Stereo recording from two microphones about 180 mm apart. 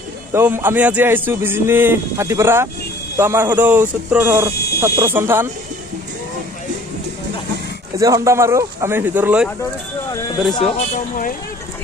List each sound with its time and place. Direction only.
0.3 s a man's voice: 10° right (ahead or behind)
7.9 s a man's voice: 20° right (ahead or behind)
10.6 s speech: 40° left (ahead or behind)